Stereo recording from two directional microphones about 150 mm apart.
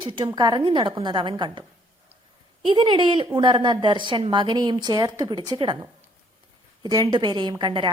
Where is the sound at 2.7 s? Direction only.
30° right (ahead or behind).